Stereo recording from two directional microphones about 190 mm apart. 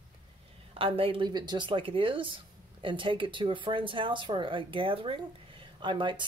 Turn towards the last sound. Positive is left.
turn(degrees=-25)  # may be behind; listen again after turning